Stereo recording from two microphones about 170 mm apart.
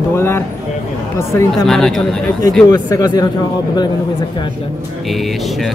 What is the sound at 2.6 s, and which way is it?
Speech, 25° left (ahead or behind).